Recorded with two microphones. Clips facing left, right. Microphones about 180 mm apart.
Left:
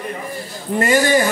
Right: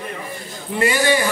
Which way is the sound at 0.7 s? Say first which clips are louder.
Left 3 dB; 45° left (ahead or behind).